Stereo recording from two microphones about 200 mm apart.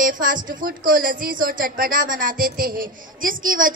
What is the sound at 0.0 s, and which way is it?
Speech, 40° right (ahead or behind).